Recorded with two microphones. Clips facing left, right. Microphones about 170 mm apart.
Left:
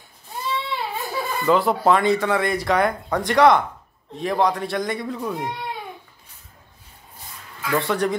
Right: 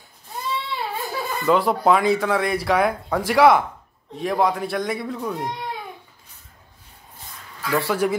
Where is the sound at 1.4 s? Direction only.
Centre (ahead or behind).